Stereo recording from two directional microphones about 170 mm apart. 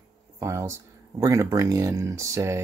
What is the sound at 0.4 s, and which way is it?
Speech, 15° right (ahead or behind).